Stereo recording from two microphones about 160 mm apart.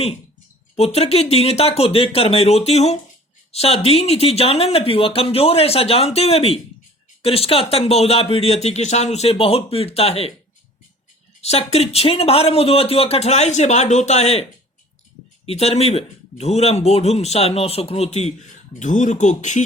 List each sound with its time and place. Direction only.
0.8 s speech: 40° left (ahead or behind)
11.3 s speech: 40° left (ahead or behind)
15.4 s speech: 40° left (ahead or behind)